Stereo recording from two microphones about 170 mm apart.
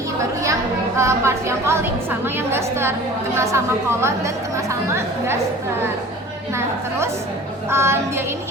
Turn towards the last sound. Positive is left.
turn(degrees=-15)  # may be behind; listen again after turning